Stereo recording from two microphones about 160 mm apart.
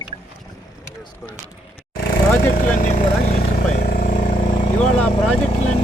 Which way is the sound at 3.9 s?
60° left (ahead or behind).